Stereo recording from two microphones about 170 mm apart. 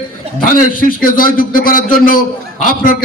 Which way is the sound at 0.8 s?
55° left (ahead or behind).